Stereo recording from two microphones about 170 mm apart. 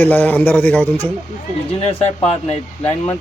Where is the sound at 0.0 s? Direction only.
10° left (ahead or behind).